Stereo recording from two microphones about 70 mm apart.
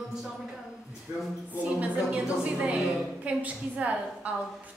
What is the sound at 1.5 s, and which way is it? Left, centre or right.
A woman's voice, centre.